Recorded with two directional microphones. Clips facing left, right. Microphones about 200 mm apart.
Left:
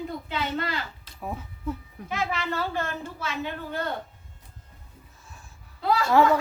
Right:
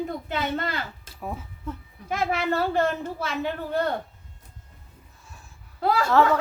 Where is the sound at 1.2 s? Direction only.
Centre (ahead or behind).